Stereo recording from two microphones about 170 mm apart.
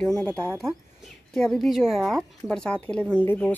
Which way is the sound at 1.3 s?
Centre (ahead or behind).